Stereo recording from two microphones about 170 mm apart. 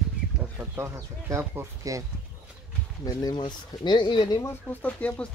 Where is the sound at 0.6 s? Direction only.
15° right (ahead or behind).